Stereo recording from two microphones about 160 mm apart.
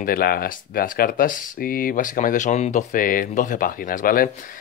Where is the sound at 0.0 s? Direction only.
65° left (ahead or behind).